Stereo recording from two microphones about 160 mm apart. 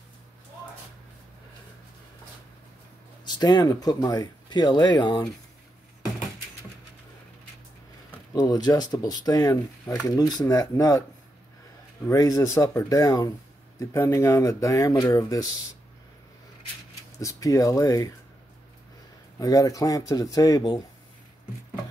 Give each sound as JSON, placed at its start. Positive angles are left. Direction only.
{"t": 3.3, "sound": "speech", "side_deg": 25}
{"t": 8.3, "sound": "speech", "side_deg": 25}
{"t": 12.1, "sound": "speech", "side_deg": 20}
{"t": 17.2, "sound": "speech", "side_deg": 20}
{"t": 19.3, "sound": "speech", "side_deg": 20}